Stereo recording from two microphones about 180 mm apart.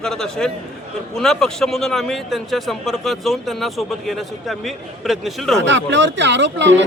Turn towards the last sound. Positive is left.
turn(degrees=-85)